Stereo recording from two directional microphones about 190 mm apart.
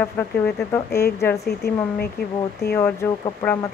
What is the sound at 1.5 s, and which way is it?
Speech, 55° left (ahead or behind).